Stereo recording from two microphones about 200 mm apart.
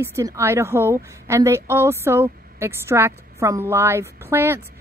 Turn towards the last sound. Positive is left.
turn(degrees=-10)  # may be behind; listen again after turning